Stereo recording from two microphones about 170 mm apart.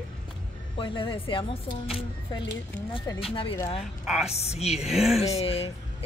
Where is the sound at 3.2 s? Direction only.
35° left (ahead or behind).